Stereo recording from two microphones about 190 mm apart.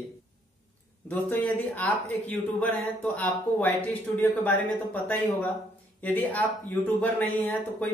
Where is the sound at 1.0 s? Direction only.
10° left (ahead or behind).